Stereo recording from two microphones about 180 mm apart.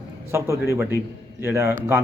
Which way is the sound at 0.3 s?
15° right (ahead or behind).